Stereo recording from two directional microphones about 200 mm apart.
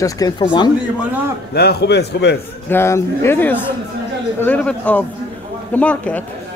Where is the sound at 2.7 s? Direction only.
15° left (ahead or behind).